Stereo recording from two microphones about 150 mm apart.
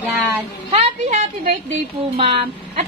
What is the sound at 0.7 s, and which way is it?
Speech, 40° right (ahead or behind).